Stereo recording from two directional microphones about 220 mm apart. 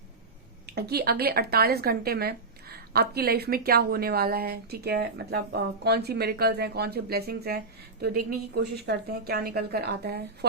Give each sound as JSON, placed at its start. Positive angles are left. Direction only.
{"t": 0.8, "sound": "speech", "side_deg": -45}